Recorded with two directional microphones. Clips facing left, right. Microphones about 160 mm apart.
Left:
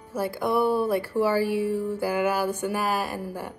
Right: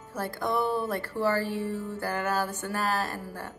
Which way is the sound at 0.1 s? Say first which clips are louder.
Left 5 dB; 10° left (ahead or behind).